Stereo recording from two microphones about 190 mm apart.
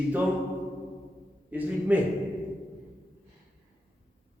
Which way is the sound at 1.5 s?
10° right (ahead or behind).